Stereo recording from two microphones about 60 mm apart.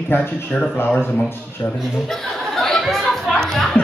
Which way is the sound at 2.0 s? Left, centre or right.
Centre.